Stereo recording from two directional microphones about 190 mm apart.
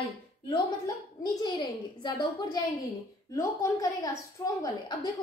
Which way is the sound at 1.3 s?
20° left (ahead or behind).